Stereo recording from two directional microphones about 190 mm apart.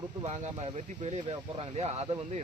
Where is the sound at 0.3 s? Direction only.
35° right (ahead or behind).